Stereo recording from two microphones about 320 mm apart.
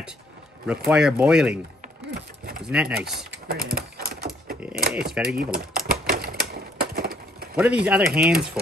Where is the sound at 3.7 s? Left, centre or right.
Right.